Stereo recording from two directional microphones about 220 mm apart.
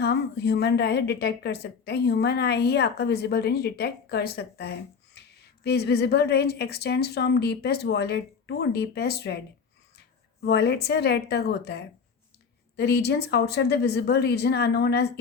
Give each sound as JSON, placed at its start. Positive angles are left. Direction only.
{"t": 0.0, "sound": "a woman's voice", "side_deg": 50}
{"t": 10.4, "sound": "a woman's voice", "side_deg": 50}